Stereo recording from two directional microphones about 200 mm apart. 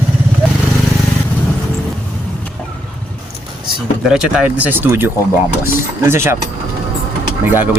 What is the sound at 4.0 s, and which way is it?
Speech, 5° right (ahead or behind).